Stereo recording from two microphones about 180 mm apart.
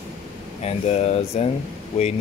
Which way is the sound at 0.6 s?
35° left (ahead or behind).